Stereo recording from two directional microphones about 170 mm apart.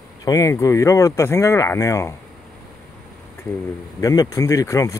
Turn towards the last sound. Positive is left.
turn(degrees=20)  # may be behind; listen again after turning